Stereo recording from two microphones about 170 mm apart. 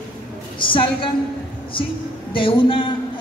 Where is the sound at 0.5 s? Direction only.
30° left (ahead or behind).